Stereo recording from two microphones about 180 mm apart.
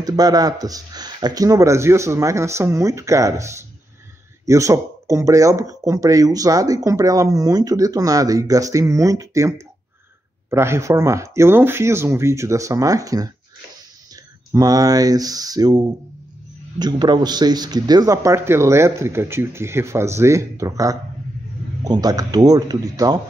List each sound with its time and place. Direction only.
0.0 s speech: 20° right (ahead or behind)
10.5 s speech: 15° right (ahead or behind)